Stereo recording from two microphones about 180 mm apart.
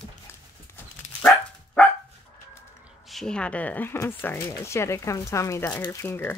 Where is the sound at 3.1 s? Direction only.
Centre (ahead or behind).